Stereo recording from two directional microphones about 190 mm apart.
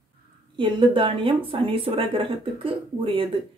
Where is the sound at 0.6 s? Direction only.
25° right (ahead or behind).